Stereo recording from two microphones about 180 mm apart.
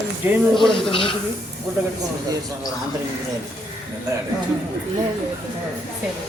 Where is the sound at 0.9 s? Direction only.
30° left (ahead or behind).